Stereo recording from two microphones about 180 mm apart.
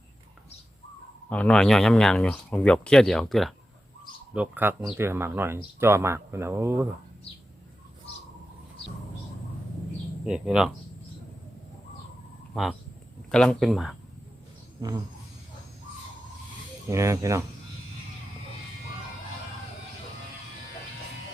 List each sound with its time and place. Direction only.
1.3 s speech: 5° left (ahead or behind); by 6.8 s 15° right (ahead or behind)
10.2 s speech: 5° right (ahead or behind)
13.3 s speech: 5° left (ahead or behind)
14.8 s speech: 20° right (ahead or behind)
16.9 s speech: 15° right (ahead or behind)